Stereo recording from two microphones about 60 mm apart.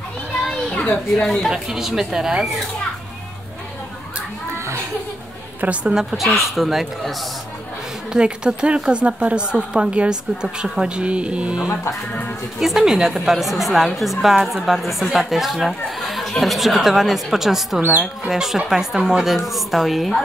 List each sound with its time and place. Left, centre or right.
0.5 s children playing: centre
1.0 s a woman's voice: centre
1.5 s speech: centre
5.6 s a woman's voice: centre
6.1 s a woman's voice: centre
12.5 s a woman's voice: centre